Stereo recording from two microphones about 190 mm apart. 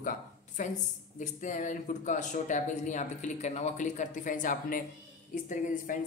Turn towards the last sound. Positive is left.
turn(degrees=45)  # may be behind; listen again after turning